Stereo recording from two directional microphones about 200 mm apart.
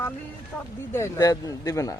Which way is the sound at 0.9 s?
15° left (ahead or behind).